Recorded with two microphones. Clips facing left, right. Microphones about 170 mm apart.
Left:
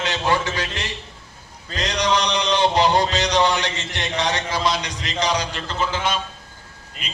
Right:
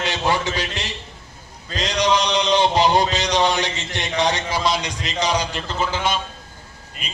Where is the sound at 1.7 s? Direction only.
10° right (ahead or behind).